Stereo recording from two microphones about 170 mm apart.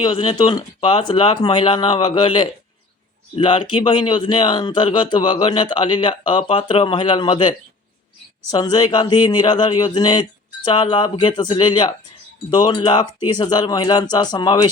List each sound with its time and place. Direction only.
0.0 s speech: 30° left (ahead or behind)